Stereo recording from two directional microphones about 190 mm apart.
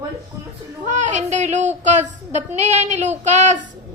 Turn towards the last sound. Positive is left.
turn(degrees=-40)  # may be behind; listen again after turning